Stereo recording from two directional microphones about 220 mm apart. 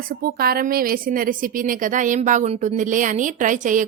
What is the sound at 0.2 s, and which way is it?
A woman's voice, 40° right (ahead or behind).